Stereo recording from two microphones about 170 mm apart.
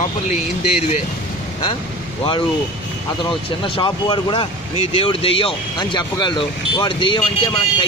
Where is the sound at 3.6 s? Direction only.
30° left (ahead or behind).